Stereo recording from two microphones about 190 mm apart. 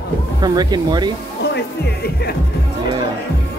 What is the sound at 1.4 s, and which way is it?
Music, 60° left (ahead or behind).